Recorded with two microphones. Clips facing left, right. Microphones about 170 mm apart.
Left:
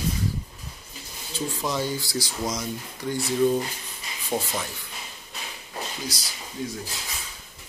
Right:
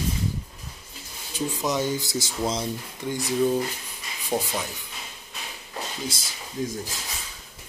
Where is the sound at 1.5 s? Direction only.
15° right (ahead or behind).